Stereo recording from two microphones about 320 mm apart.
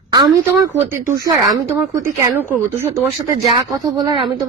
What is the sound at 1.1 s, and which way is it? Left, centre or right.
Speech, centre.